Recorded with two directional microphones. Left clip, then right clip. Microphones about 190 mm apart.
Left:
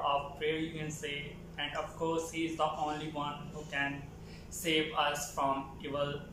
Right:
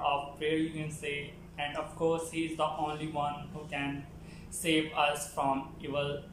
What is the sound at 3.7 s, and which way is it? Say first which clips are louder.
A man's voice: left 2 dB; 15° right (ahead or behind).